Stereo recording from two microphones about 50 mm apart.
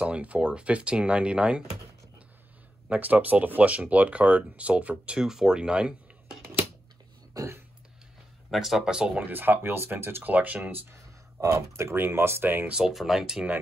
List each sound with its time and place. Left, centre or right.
0.0 s speech: right
2.9 s speech: right
5.2 s speech: centre
7.3 s a sound: right
8.5 s speech: centre
9.2 s speech: right
10.3 s speech: right
11.5 s speech: right
11.9 s speech: right
12.7 s speech: centre